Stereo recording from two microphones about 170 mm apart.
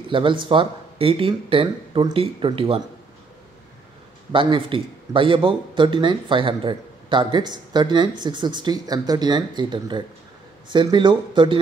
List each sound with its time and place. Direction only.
0.1 s speech: 30° right (ahead or behind)
4.3 s speech: 30° right (ahead or behind)